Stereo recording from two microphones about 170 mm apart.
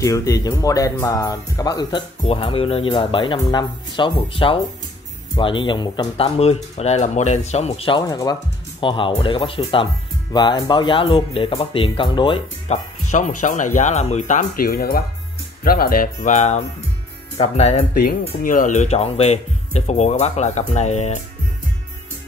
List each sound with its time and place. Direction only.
0.0 s speech: 20° left (ahead or behind)
13.1 s speech: 45° left (ahead or behind)
18.4 s speech: 55° left (ahead or behind)